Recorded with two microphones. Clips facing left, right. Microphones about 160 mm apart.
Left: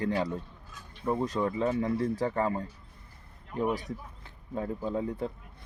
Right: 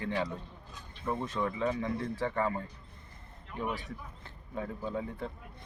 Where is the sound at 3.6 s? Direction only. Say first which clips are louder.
Left 6 dB; 40° left (ahead or behind).